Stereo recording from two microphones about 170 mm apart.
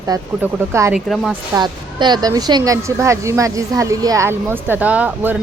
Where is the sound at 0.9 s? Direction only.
Centre (ahead or behind).